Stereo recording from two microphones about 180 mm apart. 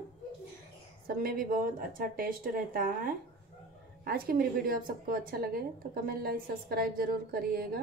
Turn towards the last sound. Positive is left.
turn(degrees=-55)  # may be behind; listen again after turning